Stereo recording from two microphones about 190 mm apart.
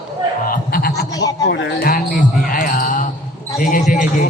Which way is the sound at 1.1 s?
20° left (ahead or behind).